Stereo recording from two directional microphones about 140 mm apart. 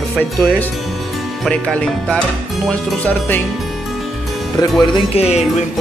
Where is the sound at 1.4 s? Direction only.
5° left (ahead or behind).